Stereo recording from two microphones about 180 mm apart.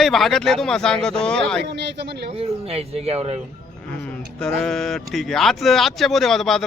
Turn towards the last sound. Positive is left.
turn(degrees=0)  # may be behind; listen again after turning